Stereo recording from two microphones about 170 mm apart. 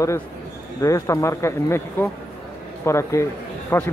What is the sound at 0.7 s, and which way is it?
Speech, 20° left (ahead or behind).